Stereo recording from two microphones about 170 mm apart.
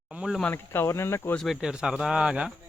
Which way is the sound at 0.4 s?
15° left (ahead or behind).